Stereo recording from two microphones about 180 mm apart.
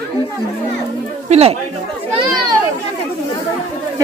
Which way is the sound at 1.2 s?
35° right (ahead or behind).